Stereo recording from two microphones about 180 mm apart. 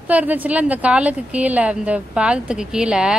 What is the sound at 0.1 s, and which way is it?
A woman's voice, 10° right (ahead or behind).